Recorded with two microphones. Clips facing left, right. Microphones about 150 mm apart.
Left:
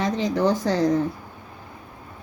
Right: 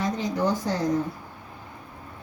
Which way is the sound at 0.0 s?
85° left.